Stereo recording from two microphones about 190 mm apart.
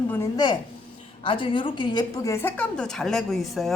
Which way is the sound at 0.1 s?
20° left (ahead or behind).